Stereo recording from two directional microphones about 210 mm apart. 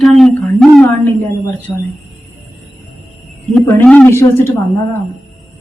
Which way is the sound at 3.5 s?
5° left (ahead or behind).